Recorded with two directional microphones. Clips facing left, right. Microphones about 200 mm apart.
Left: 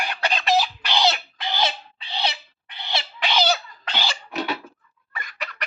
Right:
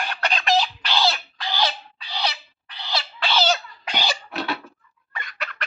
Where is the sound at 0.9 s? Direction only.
20° left (ahead or behind).